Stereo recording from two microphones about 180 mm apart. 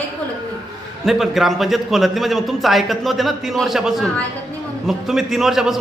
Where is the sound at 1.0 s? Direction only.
Centre (ahead or behind).